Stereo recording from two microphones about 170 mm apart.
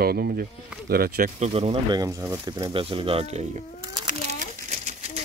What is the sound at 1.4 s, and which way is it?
Speech, 35° right (ahead or behind).